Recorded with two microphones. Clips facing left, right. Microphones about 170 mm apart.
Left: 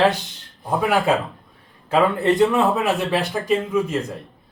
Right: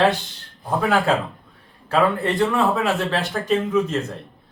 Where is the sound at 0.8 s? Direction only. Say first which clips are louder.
Even; 10° left (ahead or behind).